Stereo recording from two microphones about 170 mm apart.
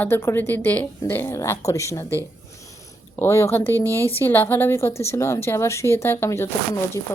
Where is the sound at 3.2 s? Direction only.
15° left (ahead or behind).